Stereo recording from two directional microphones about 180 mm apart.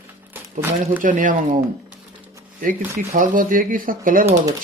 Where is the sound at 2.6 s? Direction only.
50° right (ahead or behind).